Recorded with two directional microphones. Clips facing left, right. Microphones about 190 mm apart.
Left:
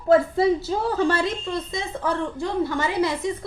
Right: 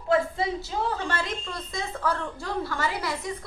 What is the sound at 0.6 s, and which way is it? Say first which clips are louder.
Speech: left 7 dB; 35° left (ahead or behind).